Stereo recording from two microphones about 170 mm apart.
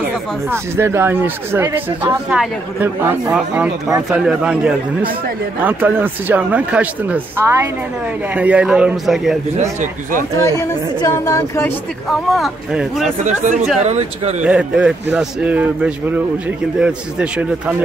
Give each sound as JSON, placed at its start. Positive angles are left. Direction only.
{"t": 0.5, "sound": "a man's voice", "side_deg": -15}
{"t": 9.6, "sound": "speech", "side_deg": -45}
{"t": 10.3, "sound": "a woman's voice", "side_deg": 20}
{"t": 12.1, "sound": "a man's voice", "side_deg": 0}
{"t": 13.0, "sound": "speech", "side_deg": -45}
{"t": 14.4, "sound": "a man's voice", "side_deg": -5}